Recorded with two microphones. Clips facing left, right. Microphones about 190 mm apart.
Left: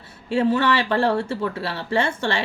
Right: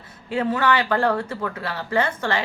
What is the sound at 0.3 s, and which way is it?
Speech, 30° left (ahead or behind).